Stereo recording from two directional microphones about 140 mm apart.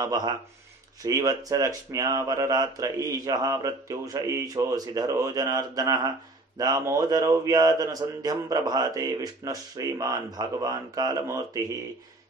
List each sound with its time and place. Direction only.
0.0 s speech: 30° right (ahead or behind)